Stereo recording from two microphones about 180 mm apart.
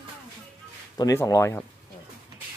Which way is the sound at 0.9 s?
20° left (ahead or behind).